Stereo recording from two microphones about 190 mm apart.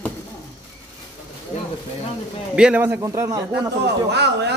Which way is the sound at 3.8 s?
65° right (ahead or behind).